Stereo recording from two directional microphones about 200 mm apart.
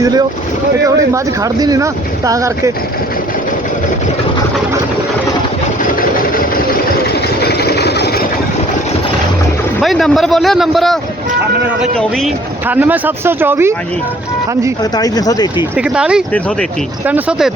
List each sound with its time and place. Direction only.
0.0 s speech: 20° right (ahead or behind)
7.4 s vehicle: 55° left (ahead or behind)
9.8 s a man's voice: centre (ahead or behind)
14.9 s speech: 20° left (ahead or behind)
15.7 s a man's voice: 5° right (ahead or behind)